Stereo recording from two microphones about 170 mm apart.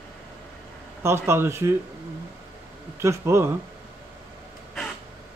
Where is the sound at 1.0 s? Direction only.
15° right (ahead or behind).